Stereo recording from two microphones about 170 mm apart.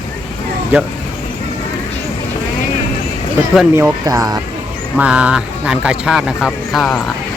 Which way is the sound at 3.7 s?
15° right (ahead or behind).